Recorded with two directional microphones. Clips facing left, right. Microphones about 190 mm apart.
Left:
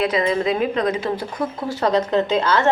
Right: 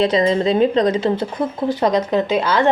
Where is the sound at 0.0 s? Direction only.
30° right (ahead or behind).